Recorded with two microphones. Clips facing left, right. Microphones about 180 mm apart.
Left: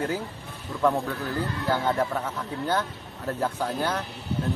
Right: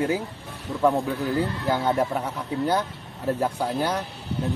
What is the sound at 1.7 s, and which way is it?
A man's voice, 15° right (ahead or behind).